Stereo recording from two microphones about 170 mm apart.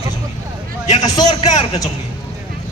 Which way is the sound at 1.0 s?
25° left (ahead or behind).